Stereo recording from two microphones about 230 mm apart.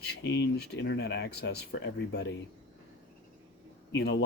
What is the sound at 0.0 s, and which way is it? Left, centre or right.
Speech, left.